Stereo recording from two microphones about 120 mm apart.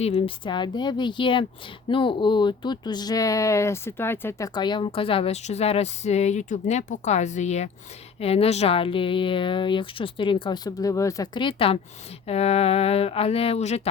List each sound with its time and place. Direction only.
0.0 s a woman's voice: 55° left (ahead or behind); by 7.7 s 70° left (ahead or behind)
8.2 s speech: 55° left (ahead or behind); by 11.3 s 30° left (ahead or behind)
11.3 s speech: 50° left (ahead or behind)
12.3 s speech: 60° left (ahead or behind)